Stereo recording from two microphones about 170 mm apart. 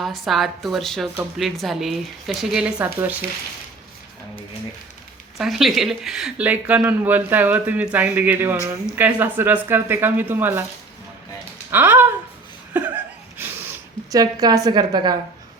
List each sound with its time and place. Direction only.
0.0 s a woman's voice: centre (ahead or behind)
5.4 s speech: centre (ahead or behind)
11.7 s speech: 10° right (ahead or behind)
12.7 s laughter: 10° right (ahead or behind)
13.4 s a sound: 15° right (ahead or behind)
14.1 s a woman's voice: 20° right (ahead or behind)